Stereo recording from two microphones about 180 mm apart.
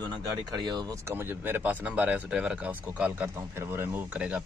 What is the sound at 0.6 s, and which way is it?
Speech, 25° right (ahead or behind).